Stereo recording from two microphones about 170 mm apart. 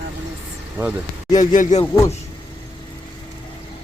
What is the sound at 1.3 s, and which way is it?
Speech, 50° left (ahead or behind).